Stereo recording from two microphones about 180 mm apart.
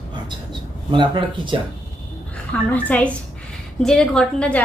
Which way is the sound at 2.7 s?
10° left (ahead or behind).